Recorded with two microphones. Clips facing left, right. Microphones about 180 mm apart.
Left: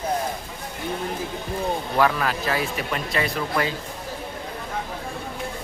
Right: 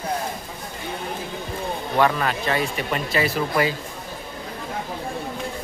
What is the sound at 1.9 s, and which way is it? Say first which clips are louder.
Speech: right 2 dB; centre (ahead or behind).